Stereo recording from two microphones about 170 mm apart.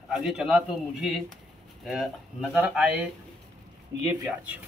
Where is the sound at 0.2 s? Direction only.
5° right (ahead or behind).